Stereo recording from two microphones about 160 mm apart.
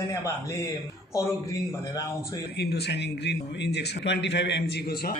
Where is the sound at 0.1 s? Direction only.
20° left (ahead or behind).